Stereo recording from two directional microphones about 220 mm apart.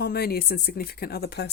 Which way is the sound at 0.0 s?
45° left (ahead or behind).